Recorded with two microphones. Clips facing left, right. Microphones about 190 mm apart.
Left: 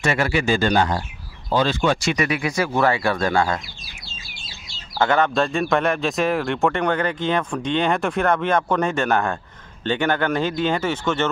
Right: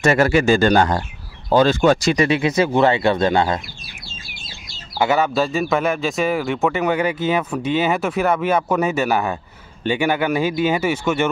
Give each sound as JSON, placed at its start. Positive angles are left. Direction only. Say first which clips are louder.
{"t": 0.0, "sound": "speech", "louder": "right 6 dB", "side_deg": -40}
{"t": 4.9, "sound": "a man's voice", "louder": "right 1 dB", "side_deg": -10}